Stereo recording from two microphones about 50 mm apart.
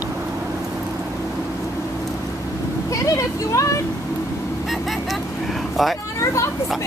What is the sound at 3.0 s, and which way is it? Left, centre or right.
Vehicle, left.